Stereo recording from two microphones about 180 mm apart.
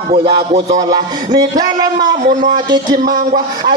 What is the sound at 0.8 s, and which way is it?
Speech, 20° right (ahead or behind).